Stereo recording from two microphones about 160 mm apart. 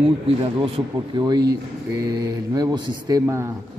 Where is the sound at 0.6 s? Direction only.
30° right (ahead or behind).